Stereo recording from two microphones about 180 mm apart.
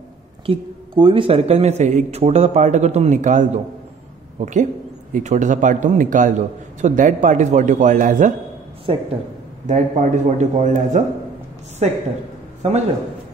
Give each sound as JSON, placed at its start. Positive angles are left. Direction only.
{"t": 0.5, "sound": "a man's voice", "side_deg": -25}
{"t": 8.9, "sound": "speech", "side_deg": -30}
{"t": 9.7, "sound": "speech", "side_deg": -40}